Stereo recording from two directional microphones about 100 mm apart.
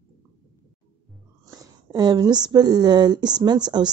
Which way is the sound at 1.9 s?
45° right (ahead or behind).